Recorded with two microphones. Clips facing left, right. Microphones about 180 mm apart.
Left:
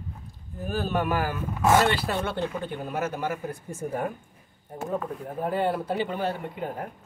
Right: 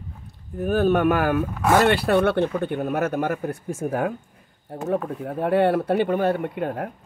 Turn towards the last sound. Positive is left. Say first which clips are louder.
# right 7 dB
turn(degrees=-65)  # may be behind; listen again after turning